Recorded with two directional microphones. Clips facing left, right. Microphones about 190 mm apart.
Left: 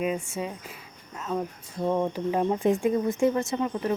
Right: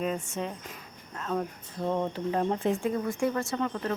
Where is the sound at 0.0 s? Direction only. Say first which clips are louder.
Left 2 dB; 10° left (ahead or behind).